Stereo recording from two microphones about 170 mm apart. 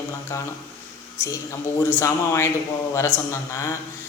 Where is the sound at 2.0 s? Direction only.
15° left (ahead or behind).